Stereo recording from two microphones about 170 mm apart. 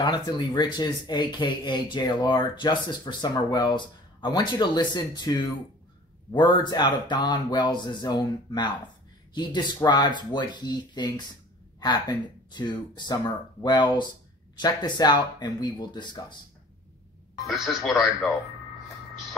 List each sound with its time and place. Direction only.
0.0 s speech: 25° left (ahead or behind)
17.5 s speech: centre (ahead or behind)